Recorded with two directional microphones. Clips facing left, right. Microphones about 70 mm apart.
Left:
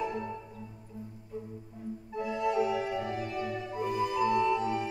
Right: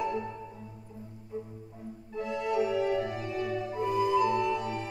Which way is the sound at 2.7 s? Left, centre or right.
Centre.